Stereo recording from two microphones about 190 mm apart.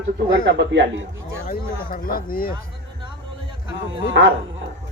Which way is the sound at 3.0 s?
25° right (ahead or behind).